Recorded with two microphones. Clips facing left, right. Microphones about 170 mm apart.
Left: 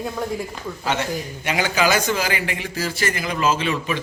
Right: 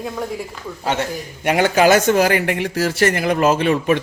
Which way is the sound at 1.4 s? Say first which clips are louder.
Right 7 dB; 55° right (ahead or behind).